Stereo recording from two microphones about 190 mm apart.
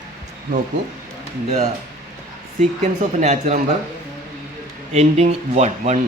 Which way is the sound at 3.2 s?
35° right (ahead or behind).